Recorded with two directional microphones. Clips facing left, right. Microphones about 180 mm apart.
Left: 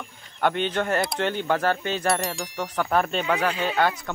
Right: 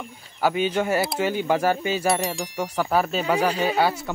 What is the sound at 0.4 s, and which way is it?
Speech, 5° right (ahead or behind).